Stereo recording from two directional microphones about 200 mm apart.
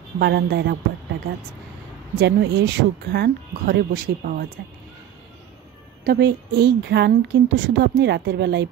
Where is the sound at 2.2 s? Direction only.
60° right (ahead or behind).